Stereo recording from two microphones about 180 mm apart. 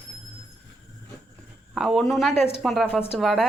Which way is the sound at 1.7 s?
Centre (ahead or behind).